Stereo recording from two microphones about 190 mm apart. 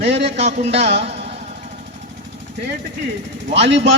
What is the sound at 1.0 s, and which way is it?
Vehicle, 30° right (ahead or behind).